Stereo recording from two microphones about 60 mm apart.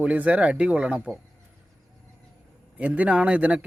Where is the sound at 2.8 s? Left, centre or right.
Right.